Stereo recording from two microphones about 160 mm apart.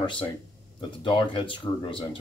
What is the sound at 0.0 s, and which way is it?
Speech, 30° left (ahead or behind).